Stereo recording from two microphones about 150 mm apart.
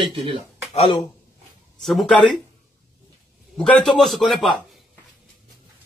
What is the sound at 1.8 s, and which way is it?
Speech, centre (ahead or behind).